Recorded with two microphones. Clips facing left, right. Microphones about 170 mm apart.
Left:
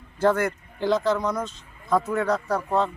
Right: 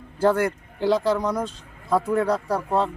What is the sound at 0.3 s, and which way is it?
Speech, 10° right (ahead or behind).